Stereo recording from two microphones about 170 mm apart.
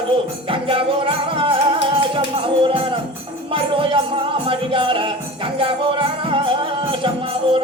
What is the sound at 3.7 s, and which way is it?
Music, 30° right (ahead or behind).